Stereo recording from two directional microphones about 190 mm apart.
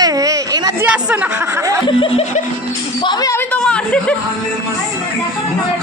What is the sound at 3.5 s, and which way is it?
Speech, 5° left (ahead or behind).